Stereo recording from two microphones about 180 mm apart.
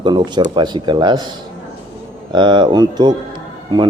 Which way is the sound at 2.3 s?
25° right (ahead or behind).